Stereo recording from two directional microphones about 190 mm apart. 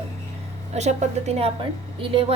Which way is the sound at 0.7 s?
35° right (ahead or behind).